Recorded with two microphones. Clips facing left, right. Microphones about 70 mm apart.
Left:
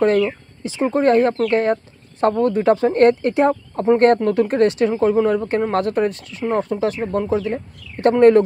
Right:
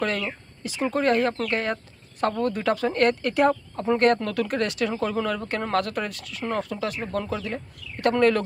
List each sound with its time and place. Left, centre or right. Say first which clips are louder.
0.0 s speech: left 11 dB; left